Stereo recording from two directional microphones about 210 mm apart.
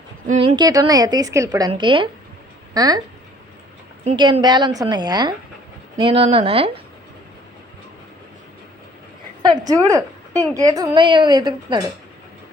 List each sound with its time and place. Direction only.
0.3 s a woman's voice: 25° right (ahead or behind)
4.0 s a woman's voice: 20° right (ahead or behind)
9.5 s a woman's voice: 20° right (ahead or behind)